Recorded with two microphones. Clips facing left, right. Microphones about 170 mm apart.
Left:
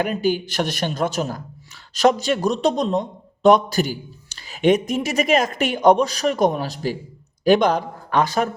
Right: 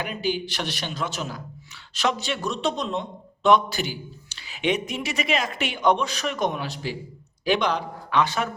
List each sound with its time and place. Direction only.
0.0 s a man's voice: 45° left (ahead or behind)